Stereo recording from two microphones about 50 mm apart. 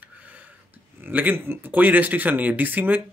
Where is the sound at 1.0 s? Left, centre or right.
Right.